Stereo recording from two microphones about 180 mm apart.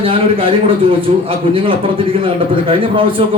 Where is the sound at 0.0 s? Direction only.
30° right (ahead or behind).